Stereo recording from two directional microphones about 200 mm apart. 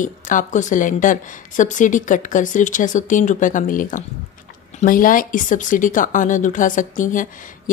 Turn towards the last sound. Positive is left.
turn(degrees=40)  # may be behind; listen again after turning